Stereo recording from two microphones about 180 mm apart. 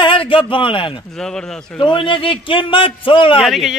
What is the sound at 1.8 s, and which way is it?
Speech, 25° left (ahead or behind).